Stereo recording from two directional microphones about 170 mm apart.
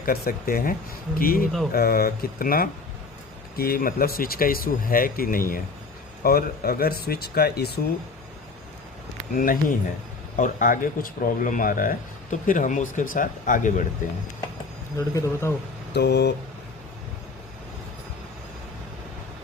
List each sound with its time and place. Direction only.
0.0 s speech: 60° left (ahead or behind)
9.3 s speech: 55° left (ahead or behind)
14.9 s a man's voice: 15° left (ahead or behind)
16.0 s speech: 75° left (ahead or behind)